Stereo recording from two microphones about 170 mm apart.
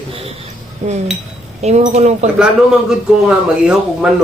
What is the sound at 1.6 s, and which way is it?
Speech, 40° right (ahead or behind).